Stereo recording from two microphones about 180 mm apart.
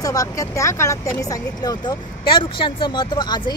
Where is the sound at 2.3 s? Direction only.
25° left (ahead or behind).